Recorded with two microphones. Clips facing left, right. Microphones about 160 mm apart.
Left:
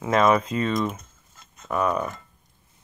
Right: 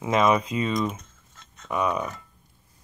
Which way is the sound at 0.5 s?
Centre (ahead or behind).